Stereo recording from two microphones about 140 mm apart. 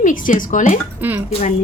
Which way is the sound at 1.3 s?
50° left (ahead or behind).